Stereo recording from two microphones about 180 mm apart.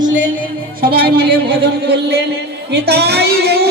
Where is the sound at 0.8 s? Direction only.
55° right (ahead or behind).